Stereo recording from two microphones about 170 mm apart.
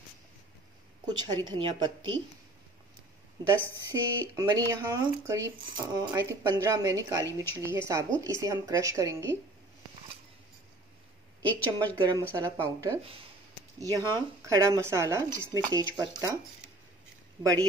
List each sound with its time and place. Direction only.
1.0 s speech: 25° right (ahead or behind)
3.9 s speech: 20° right (ahead or behind)
11.4 s a woman's voice: 10° left (ahead or behind)
12.0 s speech: 20° right (ahead or behind)
17.4 s speech: 20° right (ahead or behind)